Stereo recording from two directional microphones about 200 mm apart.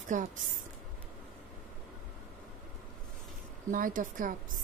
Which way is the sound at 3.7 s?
45° right (ahead or behind).